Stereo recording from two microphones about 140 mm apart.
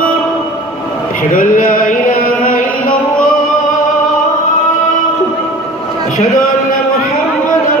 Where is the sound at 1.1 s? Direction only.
80° left.